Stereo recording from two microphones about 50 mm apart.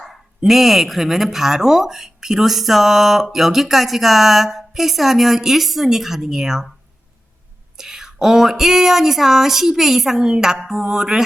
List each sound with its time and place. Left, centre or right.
0.0 s a woman's voice: centre
7.8 s speech: centre